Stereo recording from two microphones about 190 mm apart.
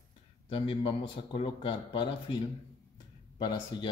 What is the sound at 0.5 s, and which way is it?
Speech, 25° left (ahead or behind).